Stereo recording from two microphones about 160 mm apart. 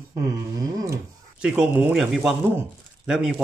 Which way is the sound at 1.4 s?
5° right (ahead or behind).